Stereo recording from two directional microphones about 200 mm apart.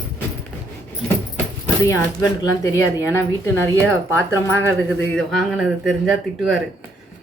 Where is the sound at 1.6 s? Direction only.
15° left (ahead or behind).